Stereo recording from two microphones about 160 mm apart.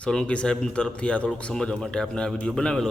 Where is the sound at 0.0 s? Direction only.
5° left (ahead or behind).